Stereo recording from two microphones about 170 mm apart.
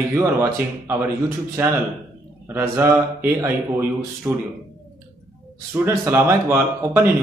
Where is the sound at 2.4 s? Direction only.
15° right (ahead or behind).